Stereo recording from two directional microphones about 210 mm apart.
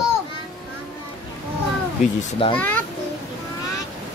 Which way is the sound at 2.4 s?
25° left (ahead or behind).